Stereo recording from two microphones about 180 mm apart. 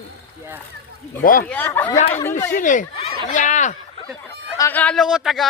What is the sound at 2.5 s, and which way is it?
Speech, 45° left (ahead or behind).